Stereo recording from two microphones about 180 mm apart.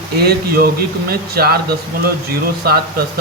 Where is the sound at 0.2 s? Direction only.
60° right (ahead or behind).